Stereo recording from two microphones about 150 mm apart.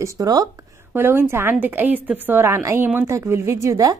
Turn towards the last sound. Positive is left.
turn(degrees=-20)  # may be behind; listen again after turning